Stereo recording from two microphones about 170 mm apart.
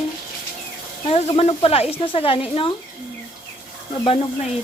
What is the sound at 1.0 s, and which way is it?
Speech, 35° left (ahead or behind).